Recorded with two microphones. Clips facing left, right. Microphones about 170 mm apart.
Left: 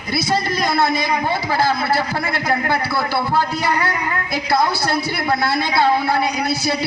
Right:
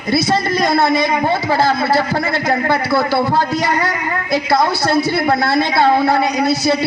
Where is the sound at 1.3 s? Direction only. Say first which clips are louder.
Right 4 dB; 25° right (ahead or behind).